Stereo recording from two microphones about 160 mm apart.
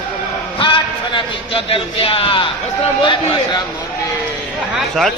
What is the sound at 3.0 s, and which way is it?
Speech, 30° left (ahead or behind).